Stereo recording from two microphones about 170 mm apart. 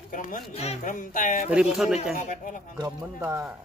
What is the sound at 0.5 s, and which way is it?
Speech, 40° left (ahead or behind).